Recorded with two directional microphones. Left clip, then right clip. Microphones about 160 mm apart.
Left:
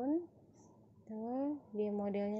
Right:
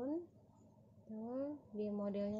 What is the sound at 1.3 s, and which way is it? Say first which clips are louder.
A woman's voice: left 5 dB; 25° left (ahead or behind).